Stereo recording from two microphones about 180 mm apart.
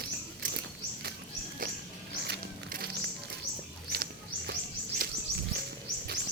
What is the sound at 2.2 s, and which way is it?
Music, 60° right (ahead or behind).